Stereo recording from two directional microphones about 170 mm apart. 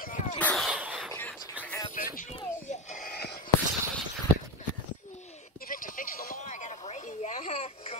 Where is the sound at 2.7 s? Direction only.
50° left (ahead or behind).